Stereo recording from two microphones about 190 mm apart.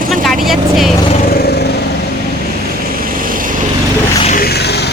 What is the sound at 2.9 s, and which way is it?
Vehicle, 50° right (ahead or behind).